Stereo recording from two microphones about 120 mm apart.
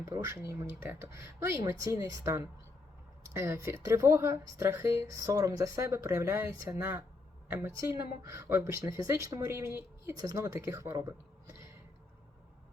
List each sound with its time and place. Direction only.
0.0 s a woman's voice: 25° right (ahead or behind)